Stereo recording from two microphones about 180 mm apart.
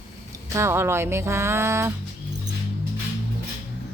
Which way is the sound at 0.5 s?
15° right (ahead or behind).